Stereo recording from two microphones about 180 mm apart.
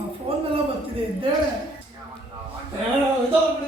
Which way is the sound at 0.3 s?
35° right (ahead or behind).